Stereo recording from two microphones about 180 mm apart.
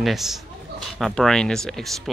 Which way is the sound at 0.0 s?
Centre (ahead or behind).